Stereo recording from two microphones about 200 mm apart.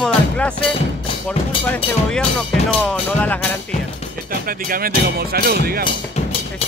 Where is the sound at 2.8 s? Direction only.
5° left (ahead or behind).